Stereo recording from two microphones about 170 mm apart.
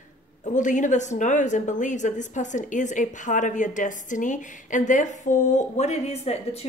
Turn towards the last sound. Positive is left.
turn(degrees=40)  # may be behind; listen again after turning